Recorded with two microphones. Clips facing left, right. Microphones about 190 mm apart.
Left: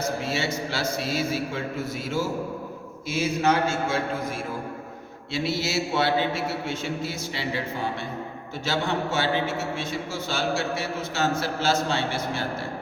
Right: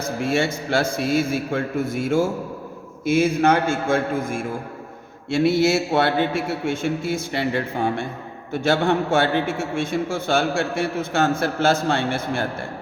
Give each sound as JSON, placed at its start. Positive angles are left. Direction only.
{"t": 0.2, "sound": "a man's voice", "side_deg": -55}